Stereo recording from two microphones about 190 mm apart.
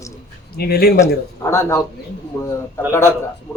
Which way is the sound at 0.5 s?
55° left (ahead or behind).